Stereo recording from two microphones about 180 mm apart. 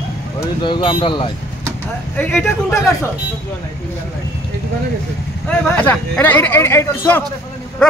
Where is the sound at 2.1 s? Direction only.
5° left (ahead or behind).